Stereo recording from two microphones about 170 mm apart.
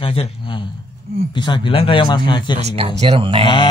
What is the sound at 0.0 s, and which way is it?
Speech, 35° left (ahead or behind).